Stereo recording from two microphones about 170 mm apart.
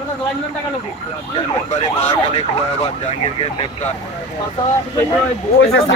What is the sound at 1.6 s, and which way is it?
Speech, 40° left (ahead or behind).